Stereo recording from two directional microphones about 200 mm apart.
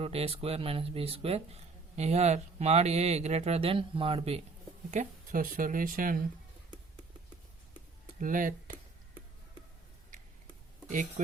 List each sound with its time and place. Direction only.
0.0 s speech: 30° right (ahead or behind)
4.9 s speech: 40° right (ahead or behind)
8.2 s speech: 40° right (ahead or behind)